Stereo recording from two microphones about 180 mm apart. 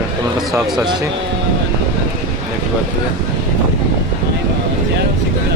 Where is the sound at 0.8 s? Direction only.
25° right (ahead or behind).